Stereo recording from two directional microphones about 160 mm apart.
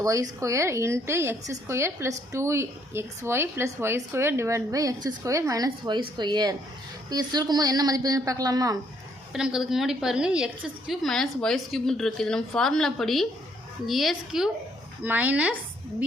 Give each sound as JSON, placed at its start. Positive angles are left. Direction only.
{"t": 0.0, "sound": "a woman's voice", "side_deg": -20}
{"t": 9.3, "sound": "a woman's voice", "side_deg": -5}